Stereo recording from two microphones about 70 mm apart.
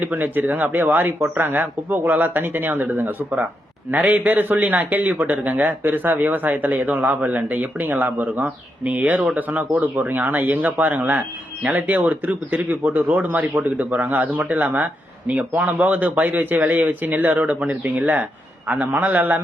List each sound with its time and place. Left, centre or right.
0.0 s speech: right